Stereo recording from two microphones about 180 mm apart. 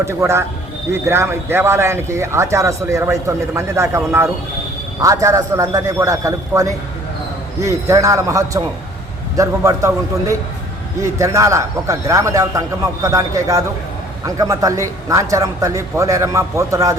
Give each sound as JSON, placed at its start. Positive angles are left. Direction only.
{"t": 0.0, "sound": "speech", "side_deg": -15}